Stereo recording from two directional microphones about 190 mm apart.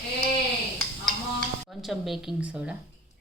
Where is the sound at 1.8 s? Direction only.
Centre (ahead or behind).